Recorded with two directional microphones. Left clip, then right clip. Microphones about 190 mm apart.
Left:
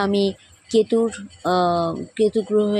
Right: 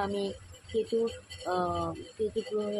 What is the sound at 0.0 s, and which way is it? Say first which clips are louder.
Speech: left 12 dB; 50° left (ahead or behind).